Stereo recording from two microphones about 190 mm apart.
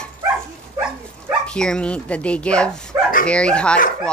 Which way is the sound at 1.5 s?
5° left (ahead or behind).